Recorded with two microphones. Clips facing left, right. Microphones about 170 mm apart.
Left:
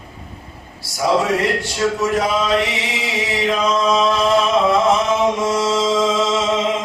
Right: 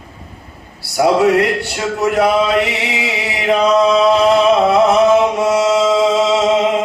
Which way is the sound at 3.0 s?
65° right (ahead or behind).